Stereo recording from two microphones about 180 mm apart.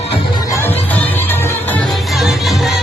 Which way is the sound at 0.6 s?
10° left (ahead or behind).